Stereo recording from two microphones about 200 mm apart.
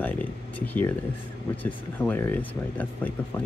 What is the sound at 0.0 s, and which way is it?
Speech, 10° left (ahead or behind).